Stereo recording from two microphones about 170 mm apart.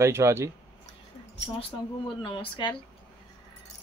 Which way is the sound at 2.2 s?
30° left (ahead or behind).